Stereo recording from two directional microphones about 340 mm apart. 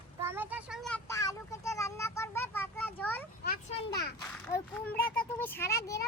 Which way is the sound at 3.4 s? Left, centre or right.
Left.